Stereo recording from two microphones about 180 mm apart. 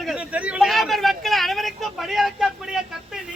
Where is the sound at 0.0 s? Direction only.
5° right (ahead or behind).